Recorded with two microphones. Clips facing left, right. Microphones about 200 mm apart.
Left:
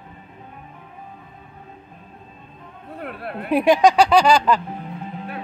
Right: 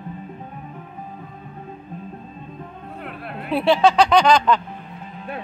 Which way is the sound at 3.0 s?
55° left (ahead or behind).